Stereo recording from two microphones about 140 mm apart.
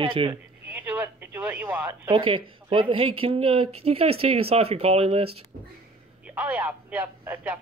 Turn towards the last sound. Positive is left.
turn(degrees=-10)  # may be behind; listen again after turning